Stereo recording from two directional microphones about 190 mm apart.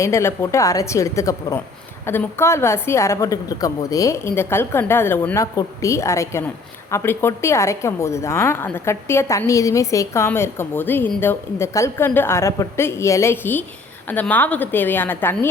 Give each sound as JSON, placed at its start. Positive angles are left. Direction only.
{"t": 0.0, "sound": "a woman's voice", "side_deg": 15}